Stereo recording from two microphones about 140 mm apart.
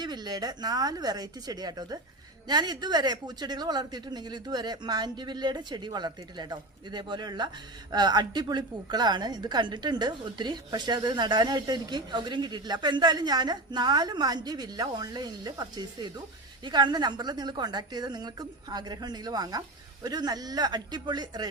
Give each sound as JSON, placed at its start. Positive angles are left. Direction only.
{"t": 0.0, "sound": "speech", "side_deg": -30}